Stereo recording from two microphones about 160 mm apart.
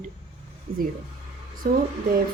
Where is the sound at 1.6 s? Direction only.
70° right (ahead or behind).